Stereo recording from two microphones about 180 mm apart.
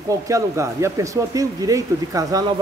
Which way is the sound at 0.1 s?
15° right (ahead or behind).